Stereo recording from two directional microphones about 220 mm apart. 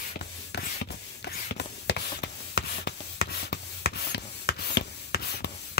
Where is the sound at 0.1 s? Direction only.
45° left (ahead or behind).